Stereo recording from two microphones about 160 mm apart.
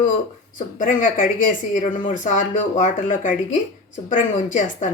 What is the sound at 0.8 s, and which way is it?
Speech, 55° left (ahead or behind).